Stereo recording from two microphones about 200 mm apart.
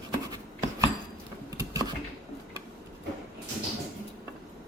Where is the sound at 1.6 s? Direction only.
15° right (ahead or behind).